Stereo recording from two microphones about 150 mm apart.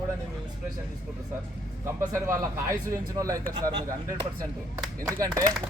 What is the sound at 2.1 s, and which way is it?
A man's voice, 20° right (ahead or behind).